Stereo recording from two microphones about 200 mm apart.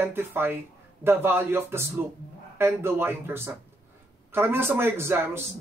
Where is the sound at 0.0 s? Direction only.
10° right (ahead or behind).